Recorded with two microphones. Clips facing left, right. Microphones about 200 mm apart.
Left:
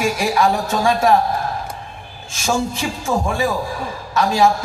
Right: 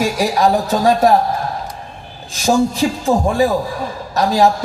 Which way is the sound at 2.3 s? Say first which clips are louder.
Right 6 dB; 35° right (ahead or behind).